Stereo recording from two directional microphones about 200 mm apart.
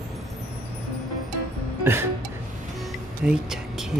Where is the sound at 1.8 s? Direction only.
10° right (ahead or behind).